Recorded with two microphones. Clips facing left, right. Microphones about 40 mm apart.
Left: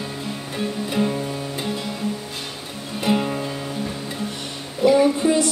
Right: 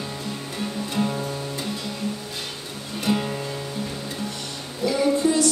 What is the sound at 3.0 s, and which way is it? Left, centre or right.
Music, centre.